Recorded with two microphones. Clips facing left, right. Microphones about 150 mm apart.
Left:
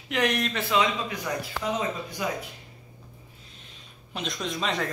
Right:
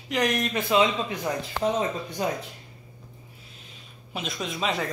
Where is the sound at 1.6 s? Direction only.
35° right (ahead or behind).